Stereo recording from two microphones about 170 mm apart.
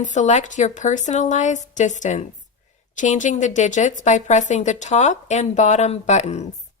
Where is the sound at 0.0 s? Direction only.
45° left (ahead or behind).